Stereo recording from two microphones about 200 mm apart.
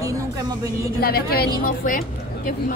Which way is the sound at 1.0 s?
50° left (ahead or behind).